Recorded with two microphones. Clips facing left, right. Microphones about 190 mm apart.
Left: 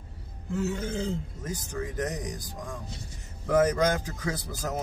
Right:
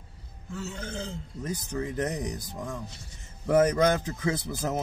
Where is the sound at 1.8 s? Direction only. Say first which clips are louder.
Right 2 dB; 25° right (ahead or behind).